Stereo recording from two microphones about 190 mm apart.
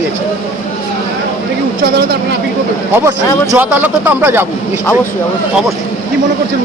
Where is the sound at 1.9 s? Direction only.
60° right (ahead or behind).